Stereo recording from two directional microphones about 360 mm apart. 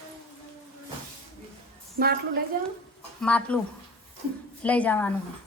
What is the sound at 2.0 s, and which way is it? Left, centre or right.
Speech, right.